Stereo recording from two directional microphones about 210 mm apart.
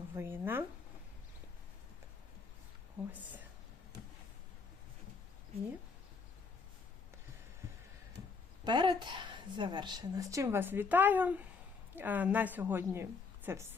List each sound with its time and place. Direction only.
0.1 s a woman's voice: 10° right (ahead or behind)
8.6 s a woman's voice: 20° right (ahead or behind)